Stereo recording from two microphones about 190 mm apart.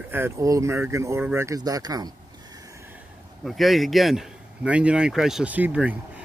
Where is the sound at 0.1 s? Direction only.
15° right (ahead or behind).